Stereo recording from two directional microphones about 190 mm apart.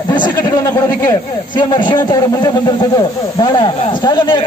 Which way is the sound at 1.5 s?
25° left (ahead or behind).